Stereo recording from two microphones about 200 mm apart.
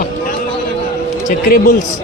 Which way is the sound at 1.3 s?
45° left (ahead or behind).